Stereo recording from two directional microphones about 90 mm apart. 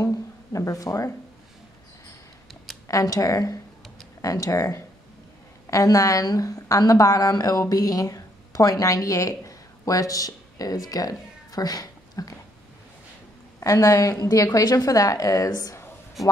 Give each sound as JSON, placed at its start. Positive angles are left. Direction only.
{"t": 0.0, "sound": "a sound", "side_deg": 35}
{"t": 2.9, "sound": "a woman's voice", "side_deg": 40}
{"t": 13.6, "sound": "a woman's voice", "side_deg": 40}